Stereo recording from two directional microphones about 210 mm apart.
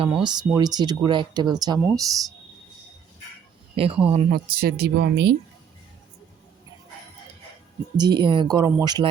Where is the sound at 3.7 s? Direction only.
25° right (ahead or behind).